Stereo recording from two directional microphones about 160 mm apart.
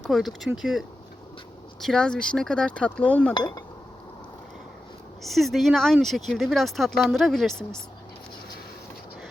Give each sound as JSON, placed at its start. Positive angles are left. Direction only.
{"t": 0.0, "sound": "speech", "side_deg": 0}
{"t": 3.3, "sound": "speech", "side_deg": 25}
{"t": 5.2, "sound": "speech", "side_deg": 0}